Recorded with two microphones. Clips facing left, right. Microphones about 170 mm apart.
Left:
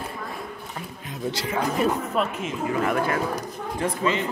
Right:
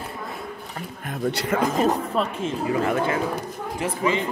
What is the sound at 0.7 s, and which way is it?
Speech, 55° right (ahead or behind).